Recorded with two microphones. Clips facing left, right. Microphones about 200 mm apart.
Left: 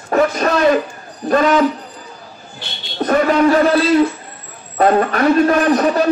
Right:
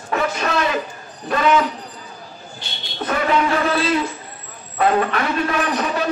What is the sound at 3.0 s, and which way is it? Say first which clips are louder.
Speech: left 7 dB; 40° left (ahead or behind).